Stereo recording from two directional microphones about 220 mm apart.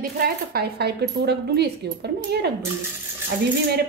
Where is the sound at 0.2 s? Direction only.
45° right (ahead or behind).